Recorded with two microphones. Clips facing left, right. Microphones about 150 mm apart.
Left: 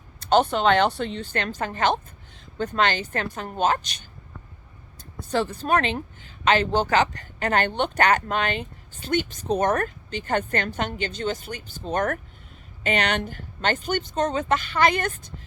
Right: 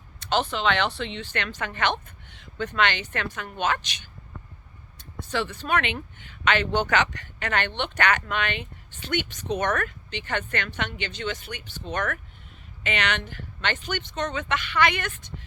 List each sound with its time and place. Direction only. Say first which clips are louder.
0.3 s speech: left 6 dB; 40° left (ahead or behind)
5.3 s speech: left 4 dB; 35° left (ahead or behind)